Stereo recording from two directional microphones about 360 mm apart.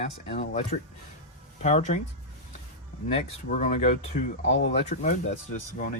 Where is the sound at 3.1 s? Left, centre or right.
Left.